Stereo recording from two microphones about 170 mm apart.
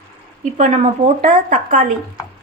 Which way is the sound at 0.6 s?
45° right (ahead or behind).